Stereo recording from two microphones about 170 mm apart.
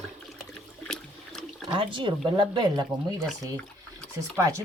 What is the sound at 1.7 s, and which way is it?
Speech, 30° right (ahead or behind).